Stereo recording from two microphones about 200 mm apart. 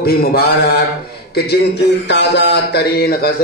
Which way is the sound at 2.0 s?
60° left (ahead or behind).